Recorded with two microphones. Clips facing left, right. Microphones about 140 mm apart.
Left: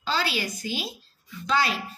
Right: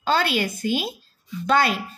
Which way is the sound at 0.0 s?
55° right (ahead or behind).